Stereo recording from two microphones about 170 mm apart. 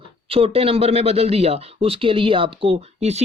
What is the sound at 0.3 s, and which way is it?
Speech, 35° right (ahead or behind).